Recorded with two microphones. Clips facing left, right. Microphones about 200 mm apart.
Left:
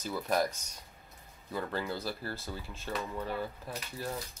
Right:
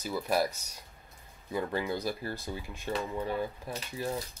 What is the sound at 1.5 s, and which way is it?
Speech, 15° right (ahead or behind).